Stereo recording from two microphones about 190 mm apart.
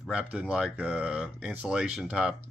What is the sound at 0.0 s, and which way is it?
Speech, 5° right (ahead or behind).